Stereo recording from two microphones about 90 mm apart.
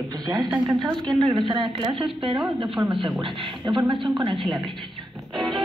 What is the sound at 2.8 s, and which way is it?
Speech, 65° right (ahead or behind).